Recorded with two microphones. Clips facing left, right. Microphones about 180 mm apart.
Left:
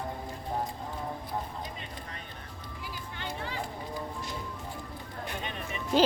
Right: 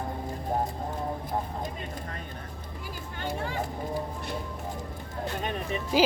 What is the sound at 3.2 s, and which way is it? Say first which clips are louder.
Hubbub: right 5 dB; 45° right (ahead or behind).